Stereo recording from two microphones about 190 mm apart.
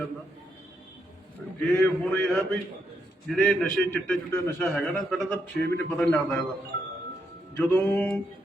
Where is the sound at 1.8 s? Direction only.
5° left (ahead or behind).